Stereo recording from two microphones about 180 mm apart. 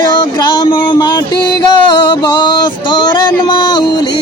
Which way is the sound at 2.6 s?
25° left (ahead or behind).